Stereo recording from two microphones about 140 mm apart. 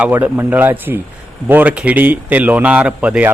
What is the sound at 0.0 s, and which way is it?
Speech, 15° right (ahead or behind).